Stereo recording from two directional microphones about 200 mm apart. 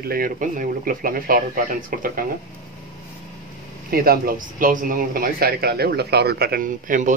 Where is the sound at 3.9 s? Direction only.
50° right (ahead or behind).